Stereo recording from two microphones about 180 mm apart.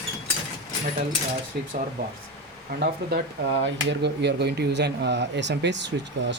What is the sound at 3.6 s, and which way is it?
Speech, 70° right (ahead or behind).